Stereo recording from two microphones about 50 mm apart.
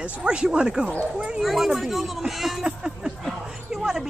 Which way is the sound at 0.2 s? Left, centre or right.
Right.